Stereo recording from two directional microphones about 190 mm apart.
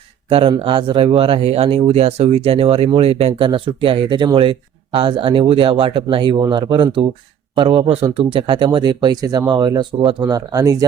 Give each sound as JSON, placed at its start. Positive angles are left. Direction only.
{"t": 0.3, "sound": "speech", "side_deg": -30}